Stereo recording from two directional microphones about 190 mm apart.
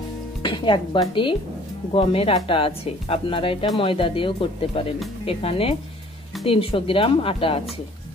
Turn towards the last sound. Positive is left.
turn(degrees=30)  # may be behind; listen again after turning